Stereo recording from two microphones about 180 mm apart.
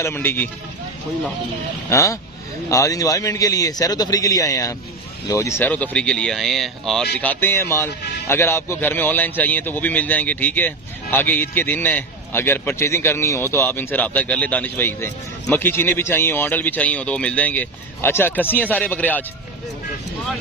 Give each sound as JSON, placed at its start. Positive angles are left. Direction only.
{"t": 0.0, "sound": "speech", "side_deg": 10}
{"t": 1.9, "sound": "a man's voice", "side_deg": 15}